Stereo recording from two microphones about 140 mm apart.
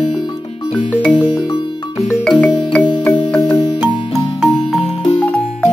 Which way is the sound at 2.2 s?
5° left (ahead or behind).